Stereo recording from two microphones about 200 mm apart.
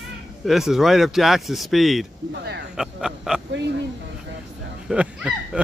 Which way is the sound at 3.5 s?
65° right (ahead or behind).